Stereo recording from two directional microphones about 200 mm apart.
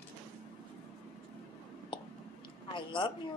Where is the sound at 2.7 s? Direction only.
25° left (ahead or behind).